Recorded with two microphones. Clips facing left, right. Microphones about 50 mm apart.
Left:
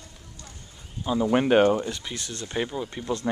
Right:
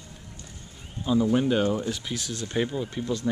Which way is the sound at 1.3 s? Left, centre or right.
Left.